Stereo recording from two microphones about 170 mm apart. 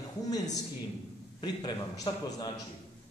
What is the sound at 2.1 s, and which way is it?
Speech, 30° left (ahead or behind).